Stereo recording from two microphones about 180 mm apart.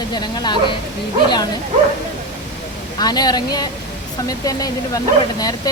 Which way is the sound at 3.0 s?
20° left (ahead or behind).